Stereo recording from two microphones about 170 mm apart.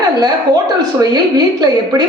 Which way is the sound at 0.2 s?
25° right (ahead or behind).